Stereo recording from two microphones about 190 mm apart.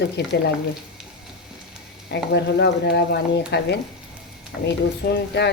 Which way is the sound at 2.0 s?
60° left (ahead or behind).